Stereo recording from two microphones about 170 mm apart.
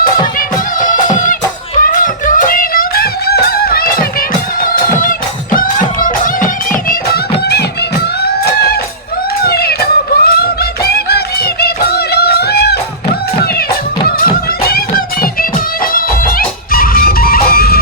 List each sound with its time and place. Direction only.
0.3 s music: 50° left (ahead or behind); by 12.8 s 70° left (ahead or behind)
14.6 s music: 60° left (ahead or behind)